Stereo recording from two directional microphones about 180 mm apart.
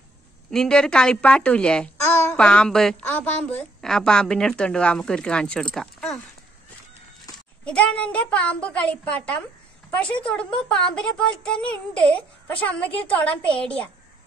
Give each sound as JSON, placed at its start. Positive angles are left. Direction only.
{"t": 0.5, "sound": "a child's voice", "side_deg": 5}
{"t": 7.6, "sound": "a woman's voice", "side_deg": 5}